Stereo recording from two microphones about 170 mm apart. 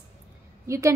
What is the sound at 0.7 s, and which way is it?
Speech, 15° right (ahead or behind).